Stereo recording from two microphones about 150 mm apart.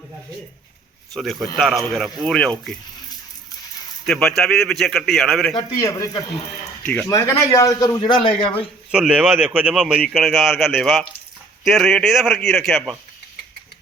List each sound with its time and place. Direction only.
1.1 s a man's voice: centre (ahead or behind)
4.0 s a man's voice: 5° left (ahead or behind)
5.5 s a man's voice: 25° left (ahead or behind)
8.9 s a man's voice: 5° right (ahead or behind)